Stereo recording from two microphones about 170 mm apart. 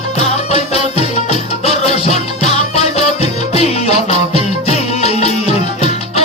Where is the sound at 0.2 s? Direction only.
35° left (ahead or behind).